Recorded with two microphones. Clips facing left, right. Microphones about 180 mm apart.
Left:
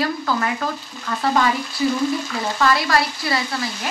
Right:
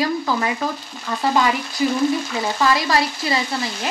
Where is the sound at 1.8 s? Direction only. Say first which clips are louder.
Right 2 dB; 20° right (ahead or behind).